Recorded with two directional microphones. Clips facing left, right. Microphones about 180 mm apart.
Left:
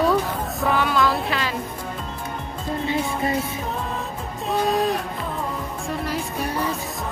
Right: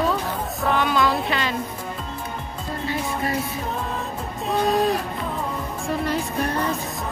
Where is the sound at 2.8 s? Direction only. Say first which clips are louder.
Left 2 dB; 25° left (ahead or behind).